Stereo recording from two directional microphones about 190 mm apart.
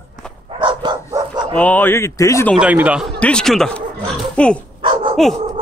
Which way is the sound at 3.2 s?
5° left (ahead or behind).